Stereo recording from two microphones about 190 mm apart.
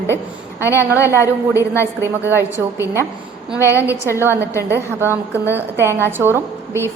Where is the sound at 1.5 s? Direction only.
15° left (ahead or behind).